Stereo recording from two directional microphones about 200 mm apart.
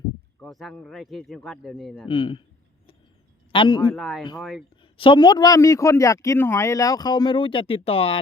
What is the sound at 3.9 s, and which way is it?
Speech, centre (ahead or behind).